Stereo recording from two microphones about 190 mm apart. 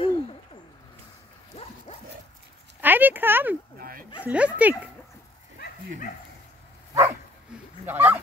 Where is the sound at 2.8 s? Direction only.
10° right (ahead or behind).